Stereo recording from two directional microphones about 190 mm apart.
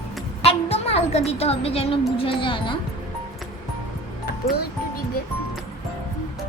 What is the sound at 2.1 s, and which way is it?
Speech, 25° left (ahead or behind).